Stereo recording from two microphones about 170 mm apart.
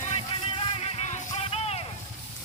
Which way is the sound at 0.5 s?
35° left (ahead or behind).